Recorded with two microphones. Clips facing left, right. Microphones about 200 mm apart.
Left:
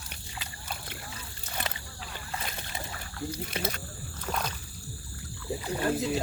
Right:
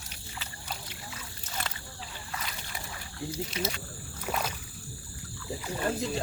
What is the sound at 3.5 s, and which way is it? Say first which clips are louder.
Speech: even; 55° left (ahead or behind).